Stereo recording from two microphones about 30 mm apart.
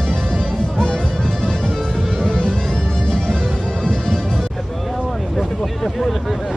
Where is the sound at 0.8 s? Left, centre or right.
Left.